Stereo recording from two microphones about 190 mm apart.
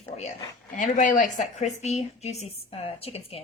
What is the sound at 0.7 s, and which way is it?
A woman's voice, 45° left (ahead or behind).